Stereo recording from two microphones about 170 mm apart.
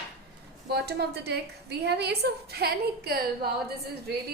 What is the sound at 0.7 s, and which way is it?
A woman's voice, 70° right (ahead or behind).